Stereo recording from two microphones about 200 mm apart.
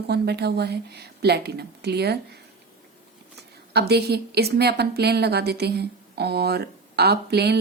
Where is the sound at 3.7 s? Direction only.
55° right (ahead or behind).